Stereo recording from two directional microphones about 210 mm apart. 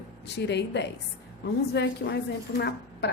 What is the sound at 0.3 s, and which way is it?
A woman's voice, 55° left (ahead or behind).